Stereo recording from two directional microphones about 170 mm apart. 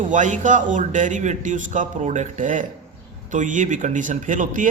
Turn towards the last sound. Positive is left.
turn(degrees=-50)  # may be behind; listen again after turning